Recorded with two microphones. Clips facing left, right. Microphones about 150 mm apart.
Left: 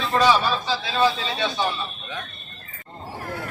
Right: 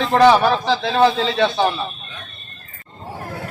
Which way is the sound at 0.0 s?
75° right (ahead or behind).